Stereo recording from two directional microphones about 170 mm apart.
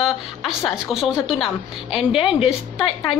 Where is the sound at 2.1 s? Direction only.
30° left (ahead or behind).